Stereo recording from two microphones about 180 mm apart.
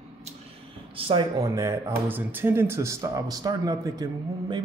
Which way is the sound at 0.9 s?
25° right (ahead or behind).